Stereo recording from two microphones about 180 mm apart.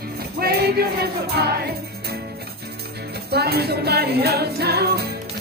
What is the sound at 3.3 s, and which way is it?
Music, 60° right (ahead or behind).